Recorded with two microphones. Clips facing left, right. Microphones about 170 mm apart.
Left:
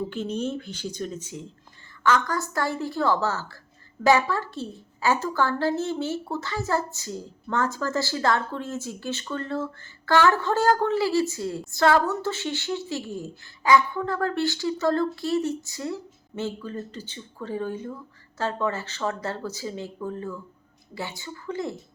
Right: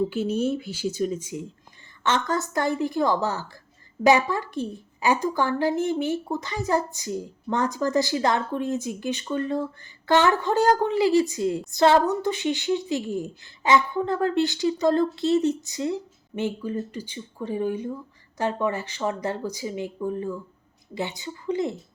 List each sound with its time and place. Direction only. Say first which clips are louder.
0.1 s a woman's voice: right 4 dB; 10° right (ahead or behind)
2.0 s a woman's voice: left 1 dB; 25° right (ahead or behind)